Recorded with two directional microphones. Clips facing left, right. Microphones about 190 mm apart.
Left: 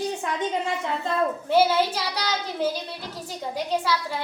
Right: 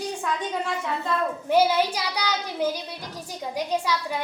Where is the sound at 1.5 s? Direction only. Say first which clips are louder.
Even; 10° right (ahead or behind).